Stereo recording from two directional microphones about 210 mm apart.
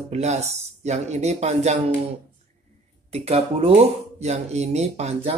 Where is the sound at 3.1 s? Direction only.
30° right (ahead or behind).